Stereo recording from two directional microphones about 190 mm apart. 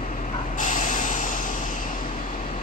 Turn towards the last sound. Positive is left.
turn(degrees=40)  # may be behind; listen again after turning